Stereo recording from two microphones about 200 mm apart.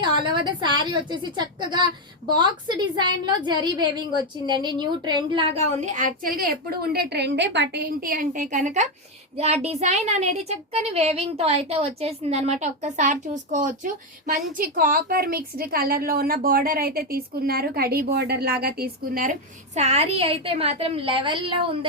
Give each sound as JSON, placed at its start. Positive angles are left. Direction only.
{"t": 0.0, "sound": "a woman's voice", "side_deg": -25}